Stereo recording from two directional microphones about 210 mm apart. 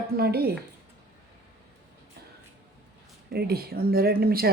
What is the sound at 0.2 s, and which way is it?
Speech, 50° right (ahead or behind).